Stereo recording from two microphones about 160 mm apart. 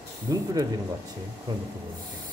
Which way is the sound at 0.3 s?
20° right (ahead or behind).